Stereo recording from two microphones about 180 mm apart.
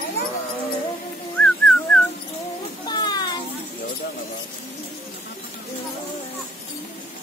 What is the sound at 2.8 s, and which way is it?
Children playing, 25° left (ahead or behind).